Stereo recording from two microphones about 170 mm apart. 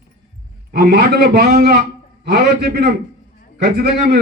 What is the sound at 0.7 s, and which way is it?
A man's voice, 65° right (ahead or behind).